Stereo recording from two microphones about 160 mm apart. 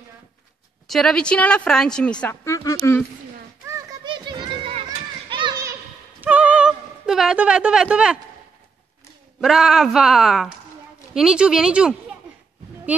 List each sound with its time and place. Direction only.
0.8 s a woman's voice: 5° left (ahead or behind)
2.4 s speech: 20° left (ahead or behind)
4.0 s a sound: 30° right (ahead or behind)
4.9 s children playing: 30° right (ahead or behind)
6.2 s a sound: 10° right (ahead or behind)
9.4 s a woman's voice: 5° right (ahead or behind)